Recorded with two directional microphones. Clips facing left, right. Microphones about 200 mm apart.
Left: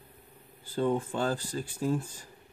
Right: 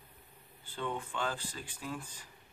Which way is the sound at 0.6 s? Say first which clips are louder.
Left 10 dB; 40° left (ahead or behind).